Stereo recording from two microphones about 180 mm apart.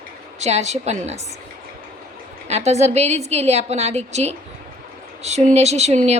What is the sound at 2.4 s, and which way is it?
A woman's voice, 35° right (ahead or behind).